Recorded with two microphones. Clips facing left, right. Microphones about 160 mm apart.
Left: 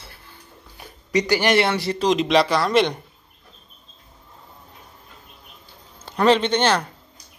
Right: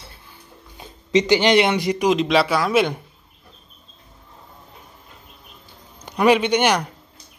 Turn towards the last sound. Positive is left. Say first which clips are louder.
# right 1 dB
turn(degrees=-15)  # may be behind; listen again after turning